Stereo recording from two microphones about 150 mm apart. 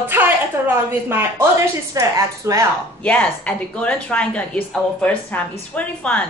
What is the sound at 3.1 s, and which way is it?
Speech, 10° left (ahead or behind).